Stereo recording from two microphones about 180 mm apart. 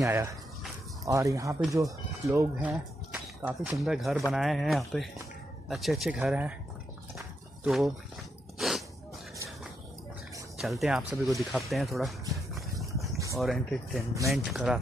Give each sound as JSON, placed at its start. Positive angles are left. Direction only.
{"t": 0.0, "sound": "speech", "side_deg": -15}
{"t": 2.7, "sound": "speech", "side_deg": -5}
{"t": 7.2, "sound": "horse", "side_deg": 0}
{"t": 8.5, "sound": "sneeze", "side_deg": 0}
{"t": 10.6, "sound": "speech", "side_deg": 0}
{"t": 12.4, "sound": "a sound", "side_deg": 0}
{"t": 13.4, "sound": "speech", "side_deg": 0}